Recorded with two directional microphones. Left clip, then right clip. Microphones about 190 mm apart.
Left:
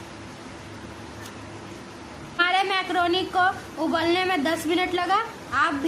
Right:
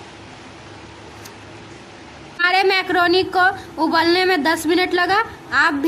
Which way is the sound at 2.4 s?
25° right (ahead or behind).